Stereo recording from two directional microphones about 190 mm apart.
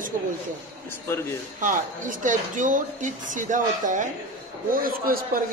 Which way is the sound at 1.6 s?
45° right (ahead or behind).